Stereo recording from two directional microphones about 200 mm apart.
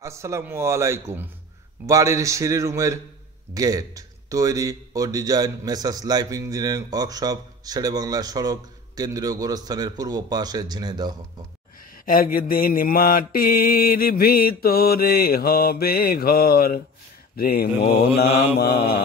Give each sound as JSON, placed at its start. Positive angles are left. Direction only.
{"t": 0.0, "sound": "a man's voice", "side_deg": -15}
{"t": 12.1, "sound": "mantra", "side_deg": 45}